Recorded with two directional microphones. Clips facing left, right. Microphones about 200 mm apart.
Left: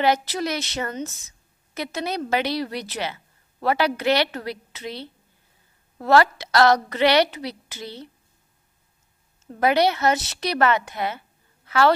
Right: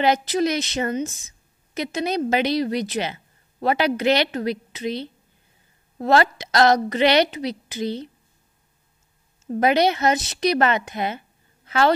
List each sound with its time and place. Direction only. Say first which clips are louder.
0.0 s a woman's voice: right 2 dB; 20° right (ahead or behind)
9.6 s a woman's voice: right 1 dB; 20° right (ahead or behind)